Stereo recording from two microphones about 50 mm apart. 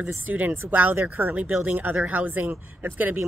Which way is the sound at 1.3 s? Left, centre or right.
Right.